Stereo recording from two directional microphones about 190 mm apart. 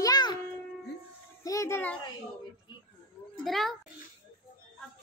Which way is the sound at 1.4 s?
15° left (ahead or behind).